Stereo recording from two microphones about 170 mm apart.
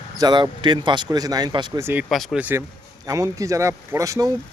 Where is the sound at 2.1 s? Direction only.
Centre (ahead or behind).